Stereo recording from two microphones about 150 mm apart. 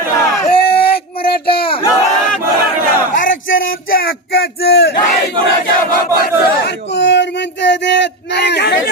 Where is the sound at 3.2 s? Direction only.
65° left (ahead or behind); by 5.4 s 90° left.